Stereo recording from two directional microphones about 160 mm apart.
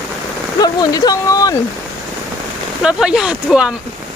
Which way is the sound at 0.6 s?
25° left (ahead or behind).